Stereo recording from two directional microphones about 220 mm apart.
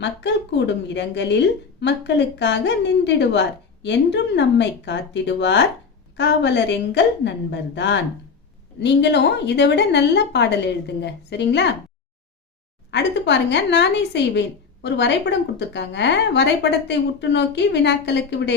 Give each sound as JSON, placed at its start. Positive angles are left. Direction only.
{"t": 0.0, "sound": "a woman's voice", "side_deg": 50}
{"t": 12.9, "sound": "a woman's voice", "side_deg": 50}